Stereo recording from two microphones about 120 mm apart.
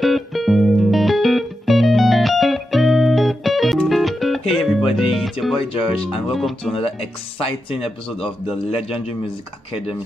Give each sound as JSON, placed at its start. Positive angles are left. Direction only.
{"t": 0.0, "sound": "music", "side_deg": 0}
{"t": 5.6, "sound": "speech", "side_deg": 50}
{"t": 6.3, "sound": "speech", "side_deg": 0}
{"t": 6.7, "sound": "speech", "side_deg": 55}